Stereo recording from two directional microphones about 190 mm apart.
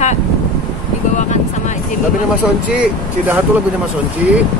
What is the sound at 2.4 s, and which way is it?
Speech, 5° right (ahead or behind).